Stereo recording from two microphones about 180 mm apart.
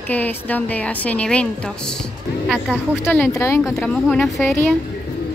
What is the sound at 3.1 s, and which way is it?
Speech, 10° left (ahead or behind).